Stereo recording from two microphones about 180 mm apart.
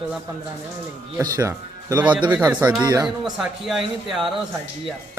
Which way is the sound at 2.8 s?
20° right (ahead or behind).